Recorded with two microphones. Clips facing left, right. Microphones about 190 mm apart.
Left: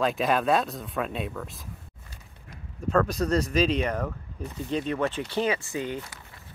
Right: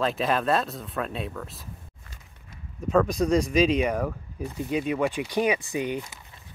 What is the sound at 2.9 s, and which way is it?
Speech, 10° right (ahead or behind).